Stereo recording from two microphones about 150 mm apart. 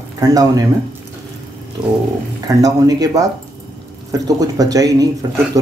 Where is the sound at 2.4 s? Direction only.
25° right (ahead or behind).